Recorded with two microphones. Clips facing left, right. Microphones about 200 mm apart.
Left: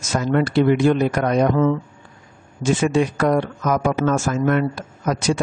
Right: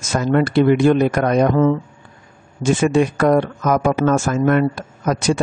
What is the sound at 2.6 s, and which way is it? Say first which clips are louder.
Speech: right 3 dB; 55° right (ahead or behind).